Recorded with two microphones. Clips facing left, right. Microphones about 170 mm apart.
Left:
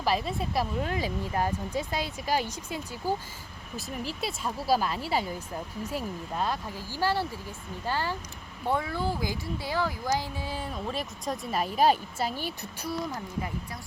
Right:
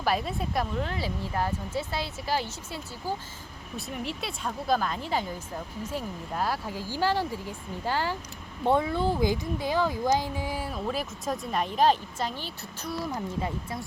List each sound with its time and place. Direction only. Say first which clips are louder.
0.0 s speech: even; centre (ahead or behind)
3.8 s speech: even; centre (ahead or behind)
6.3 s speech: right 1 dB; 5° right (ahead or behind)
6.7 s speech: right 2 dB; 15° right (ahead or behind); by 12.9 s 10° left (ahead or behind)
13.1 s speech: right 3 dB; 25° right (ahead or behind)